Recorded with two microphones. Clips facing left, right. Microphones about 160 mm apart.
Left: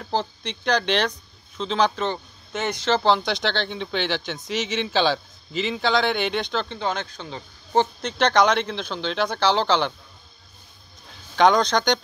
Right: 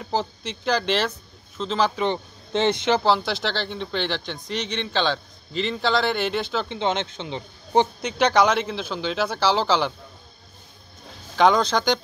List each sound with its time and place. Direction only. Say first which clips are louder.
0.0 s speech: even; 5° right (ahead or behind)
2.5 s speech: right 6 dB; 25° right (ahead or behind)
2.9 s speech: even; 5° right (ahead or behind)
6.7 s speech: right 3 dB; 20° right (ahead or behind); by 9.9 s 5° right (ahead or behind)
11.3 s speech: left 1 dB; 5° right (ahead or behind)